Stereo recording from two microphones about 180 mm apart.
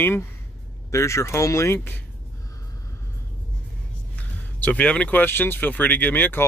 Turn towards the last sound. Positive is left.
turn(degrees=10)  # may be behind; listen again after turning